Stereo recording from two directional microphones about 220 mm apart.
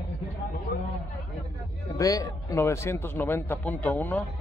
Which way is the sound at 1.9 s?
15° left (ahead or behind).